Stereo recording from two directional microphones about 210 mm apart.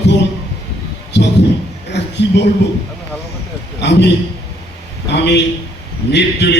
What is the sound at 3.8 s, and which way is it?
Speech, 55° left (ahead or behind).